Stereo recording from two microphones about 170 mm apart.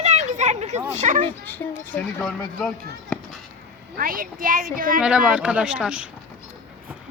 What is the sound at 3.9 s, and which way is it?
Speech, 55° right (ahead or behind).